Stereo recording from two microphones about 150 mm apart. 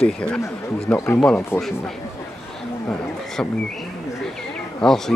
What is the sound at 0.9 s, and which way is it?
Speech, 15° left (ahead or behind).